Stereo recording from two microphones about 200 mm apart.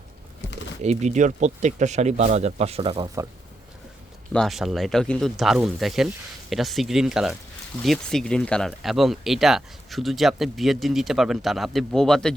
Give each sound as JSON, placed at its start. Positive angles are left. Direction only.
{"t": 0.8, "sound": "speech", "side_deg": -35}
{"t": 4.3, "sound": "speech", "side_deg": 0}